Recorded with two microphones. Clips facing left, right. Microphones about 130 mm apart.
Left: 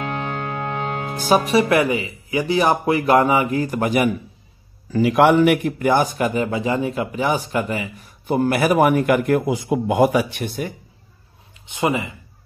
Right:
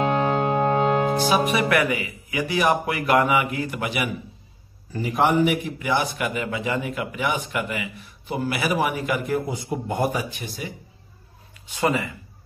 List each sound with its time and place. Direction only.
0.0 s music: 35° right (ahead or behind)
1.3 s a man's voice: 35° left (ahead or behind)
4.9 s a man's voice: 85° left; by 8.1 s 35° left (ahead or behind)
8.3 s a man's voice: 50° left (ahead or behind)
11.6 s speech: 20° left (ahead or behind)